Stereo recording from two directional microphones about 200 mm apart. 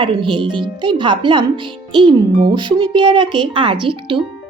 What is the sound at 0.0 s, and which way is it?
A child's voice, 25° right (ahead or behind).